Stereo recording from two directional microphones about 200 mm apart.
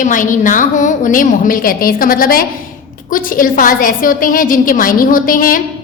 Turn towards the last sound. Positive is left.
turn(degrees=45)  # may be behind; listen again after turning